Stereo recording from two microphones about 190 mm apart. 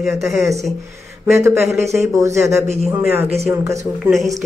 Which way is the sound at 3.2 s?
35° right (ahead or behind).